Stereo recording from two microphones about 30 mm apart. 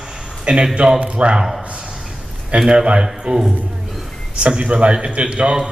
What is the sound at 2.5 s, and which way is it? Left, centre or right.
A man's voice, right.